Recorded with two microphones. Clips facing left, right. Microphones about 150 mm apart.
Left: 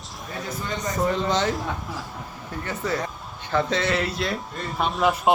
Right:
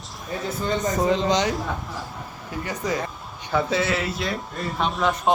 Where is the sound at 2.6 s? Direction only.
15° right (ahead or behind); by 5.1 s 5° left (ahead or behind).